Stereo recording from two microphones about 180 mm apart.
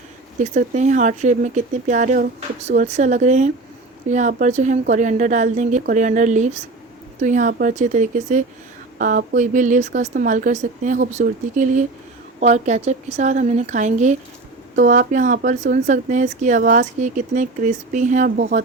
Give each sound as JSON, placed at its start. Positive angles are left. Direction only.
{"t": 0.4, "sound": "speech", "side_deg": -40}